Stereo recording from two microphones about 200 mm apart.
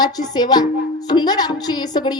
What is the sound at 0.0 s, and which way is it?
A woman's voice, 20° left (ahead or behind).